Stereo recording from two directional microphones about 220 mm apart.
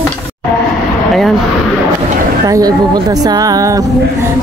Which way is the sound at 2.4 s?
15° right (ahead or behind).